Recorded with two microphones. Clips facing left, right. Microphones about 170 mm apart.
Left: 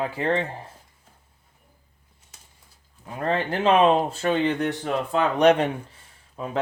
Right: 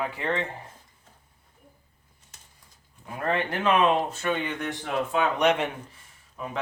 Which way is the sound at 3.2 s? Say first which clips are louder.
Left 3 dB; 30° left (ahead or behind).